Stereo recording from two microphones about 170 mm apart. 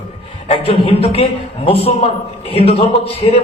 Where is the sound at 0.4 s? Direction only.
35° left (ahead or behind).